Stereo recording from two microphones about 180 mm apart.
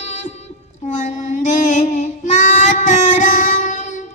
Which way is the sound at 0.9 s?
45° left (ahead or behind).